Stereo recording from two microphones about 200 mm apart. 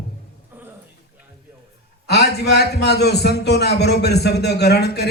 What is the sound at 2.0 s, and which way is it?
A man's voice, 55° left (ahead or behind).